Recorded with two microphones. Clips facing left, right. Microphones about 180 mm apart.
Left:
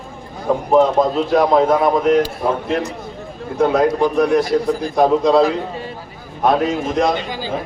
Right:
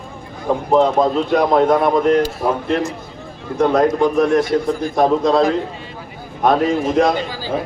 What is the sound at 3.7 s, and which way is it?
A man's voice, 5° left (ahead or behind).